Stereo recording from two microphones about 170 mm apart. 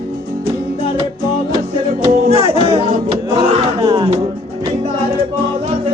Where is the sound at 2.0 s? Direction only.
35° right (ahead or behind).